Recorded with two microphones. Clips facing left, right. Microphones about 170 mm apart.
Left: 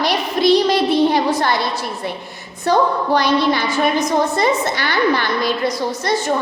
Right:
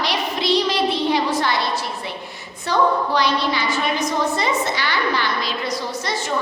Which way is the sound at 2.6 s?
50° left (ahead or behind).